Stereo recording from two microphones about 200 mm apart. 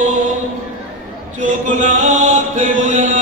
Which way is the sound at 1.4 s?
40° right (ahead or behind).